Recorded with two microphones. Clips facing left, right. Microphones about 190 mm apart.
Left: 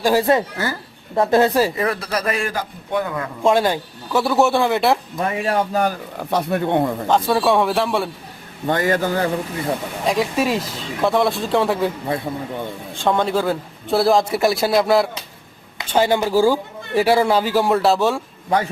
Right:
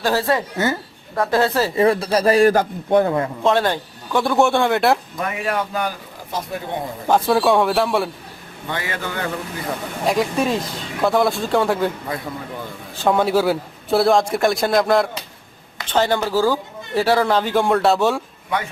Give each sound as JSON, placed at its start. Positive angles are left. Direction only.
{"t": 0.0, "sound": "a man's voice", "side_deg": 15}
{"t": 0.5, "sound": "speech", "side_deg": -20}
{"t": 1.1, "sound": "a man's voice", "side_deg": 25}
{"t": 1.7, "sound": "speech", "side_deg": -30}
{"t": 3.4, "sound": "a man's voice", "side_deg": 10}
{"t": 5.2, "sound": "a man's voice", "side_deg": 30}
{"t": 6.1, "sound": "speech", "side_deg": 65}
{"t": 7.1, "sound": "a man's voice", "side_deg": 0}
{"t": 8.6, "sound": "a man's voice", "side_deg": 45}
{"t": 10.1, "sound": "a man's voice", "side_deg": 5}
{"t": 12.1, "sound": "a man's voice", "side_deg": 30}
{"t": 12.9, "sound": "a man's voice", "side_deg": -5}